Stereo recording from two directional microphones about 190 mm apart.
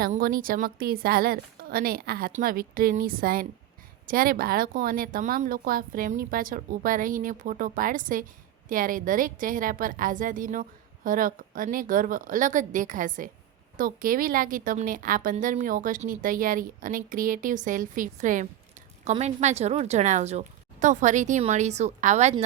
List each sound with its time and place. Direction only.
0.0 s a woman's voice: 50° right (ahead or behind)